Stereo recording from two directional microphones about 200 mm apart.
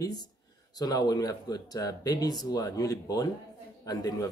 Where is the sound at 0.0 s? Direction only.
20° left (ahead or behind).